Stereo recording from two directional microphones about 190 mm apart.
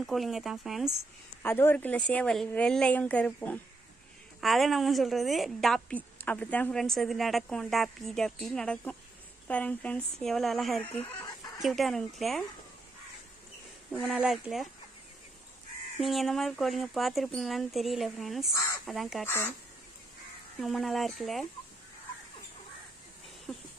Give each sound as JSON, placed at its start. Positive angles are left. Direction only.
{"t": 0.0, "sound": "a woman's voice", "side_deg": 0}
{"t": 1.4, "sound": "a woman's voice", "side_deg": 10}
{"t": 11.0, "sound": "chicken", "side_deg": 20}
{"t": 11.6, "sound": "a woman's voice", "side_deg": 0}
{"t": 13.9, "sound": "a woman's voice", "side_deg": 0}
{"t": 16.0, "sound": "a woman's voice", "side_deg": 0}
{"t": 19.2, "sound": "a woman's voice", "side_deg": 10}
{"t": 20.6, "sound": "a woman's voice", "side_deg": 0}
{"t": 23.5, "sound": "a sound", "side_deg": 0}